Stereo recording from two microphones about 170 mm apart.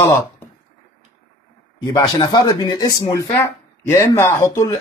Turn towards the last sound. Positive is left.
turn(degrees=20)  # may be behind; listen again after turning